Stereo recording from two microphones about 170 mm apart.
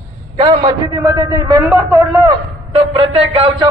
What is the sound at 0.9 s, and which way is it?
A man's voice, 20° right (ahead or behind).